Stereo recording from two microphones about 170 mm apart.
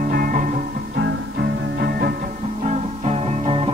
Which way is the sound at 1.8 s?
65° right (ahead or behind).